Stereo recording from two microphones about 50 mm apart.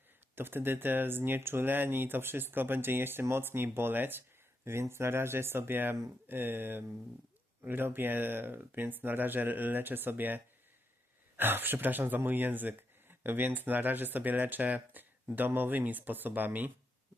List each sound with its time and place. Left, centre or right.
0.3 s speech: right
4.6 s speech: right